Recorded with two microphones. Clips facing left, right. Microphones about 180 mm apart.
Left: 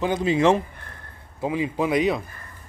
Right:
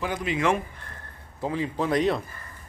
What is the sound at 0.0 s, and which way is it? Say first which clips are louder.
Speech: left 6 dB; 25° left (ahead or behind).